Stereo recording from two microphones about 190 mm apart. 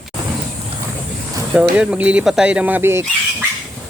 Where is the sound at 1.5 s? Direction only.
5° right (ahead or behind).